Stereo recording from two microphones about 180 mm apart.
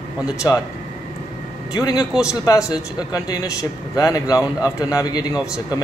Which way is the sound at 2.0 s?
5° right (ahead or behind).